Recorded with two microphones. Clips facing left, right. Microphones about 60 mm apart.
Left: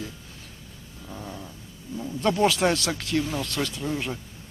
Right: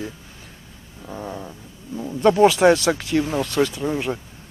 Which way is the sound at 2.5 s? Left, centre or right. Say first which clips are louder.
Right 8 dB; centre.